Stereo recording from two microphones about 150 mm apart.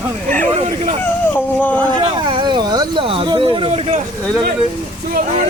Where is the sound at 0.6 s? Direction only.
50° right (ahead or behind).